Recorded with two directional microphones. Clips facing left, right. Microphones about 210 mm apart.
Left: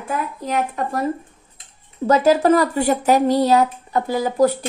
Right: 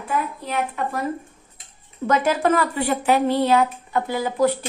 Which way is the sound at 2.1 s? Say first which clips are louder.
Left 5 dB; 35° left (ahead or behind).